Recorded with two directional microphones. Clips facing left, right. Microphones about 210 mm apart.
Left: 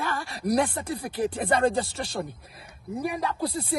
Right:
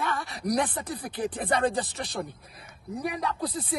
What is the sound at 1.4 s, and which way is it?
Speech, centre (ahead or behind).